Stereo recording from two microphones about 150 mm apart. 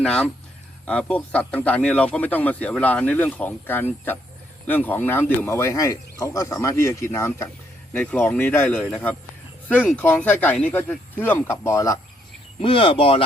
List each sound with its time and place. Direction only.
0.0 s speech: 5° left (ahead or behind)
12.6 s speech: 35° left (ahead or behind)